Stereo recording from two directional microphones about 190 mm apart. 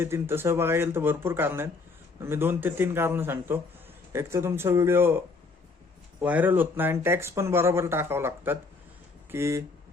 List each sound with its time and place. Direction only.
0.0 s speech: 10° right (ahead or behind)
6.2 s speech: 10° right (ahead or behind)